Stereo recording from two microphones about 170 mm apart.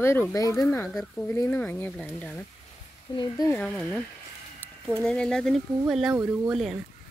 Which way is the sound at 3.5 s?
5° left (ahead or behind).